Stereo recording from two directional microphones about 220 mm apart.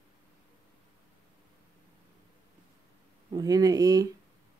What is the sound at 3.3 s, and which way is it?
Speech, 15° right (ahead or behind).